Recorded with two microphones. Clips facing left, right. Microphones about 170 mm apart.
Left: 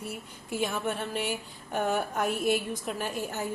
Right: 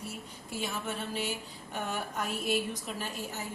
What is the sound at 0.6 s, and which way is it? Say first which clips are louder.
A woman's voice: left 5 dB; 55° left (ahead or behind).